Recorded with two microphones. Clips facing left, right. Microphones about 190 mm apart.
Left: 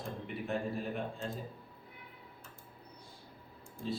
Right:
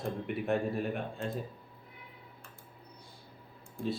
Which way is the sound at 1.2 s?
60° right (ahead or behind).